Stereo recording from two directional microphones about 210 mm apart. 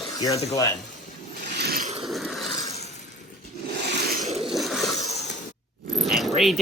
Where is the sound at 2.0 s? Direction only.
Centre (ahead or behind).